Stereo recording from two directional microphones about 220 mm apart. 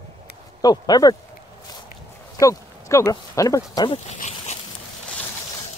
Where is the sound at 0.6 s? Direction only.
20° left (ahead or behind).